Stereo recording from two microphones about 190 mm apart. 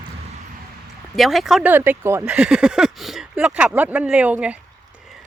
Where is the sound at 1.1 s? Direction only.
Centre (ahead or behind).